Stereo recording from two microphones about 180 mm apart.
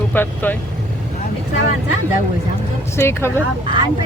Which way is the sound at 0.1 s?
10° left (ahead or behind).